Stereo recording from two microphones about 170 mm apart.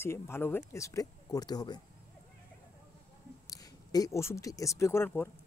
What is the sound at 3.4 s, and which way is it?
Speech, 20° left (ahead or behind).